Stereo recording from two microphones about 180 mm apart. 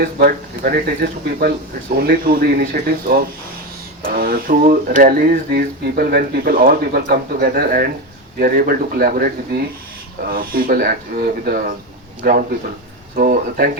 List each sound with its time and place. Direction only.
0.0 s speech: 55° right (ahead or behind)
4.1 s a sound: 55° right (ahead or behind)
4.6 s speech: 55° right (ahead or behind)